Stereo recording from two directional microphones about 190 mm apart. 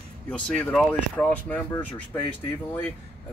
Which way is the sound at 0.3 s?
5° left (ahead or behind).